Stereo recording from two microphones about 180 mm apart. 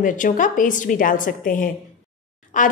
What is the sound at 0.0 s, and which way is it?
A woman's voice, 45° left (ahead or behind).